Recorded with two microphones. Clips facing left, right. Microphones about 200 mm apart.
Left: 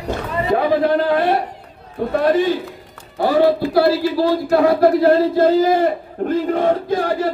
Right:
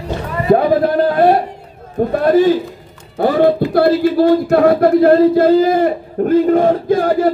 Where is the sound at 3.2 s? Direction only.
55° right (ahead or behind).